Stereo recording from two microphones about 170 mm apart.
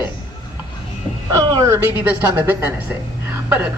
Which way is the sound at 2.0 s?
10° right (ahead or behind).